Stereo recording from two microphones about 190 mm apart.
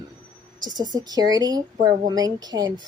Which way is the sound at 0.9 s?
20° right (ahead or behind).